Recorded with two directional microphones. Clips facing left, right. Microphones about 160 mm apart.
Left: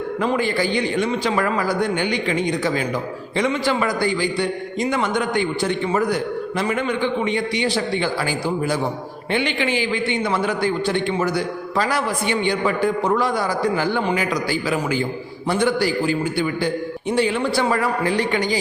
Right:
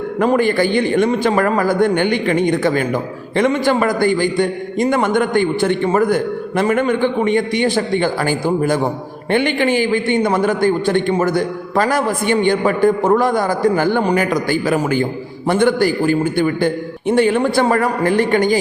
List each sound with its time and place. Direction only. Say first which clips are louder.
0.2 s a man's voice: right 7 dB; 50° right (ahead or behind)